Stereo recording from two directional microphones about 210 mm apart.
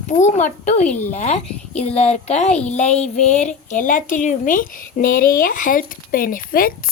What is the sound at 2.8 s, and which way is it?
Speech, 30° left (ahead or behind).